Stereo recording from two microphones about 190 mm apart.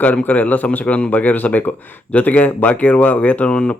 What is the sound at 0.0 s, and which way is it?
A man's voice, 10° left (ahead or behind).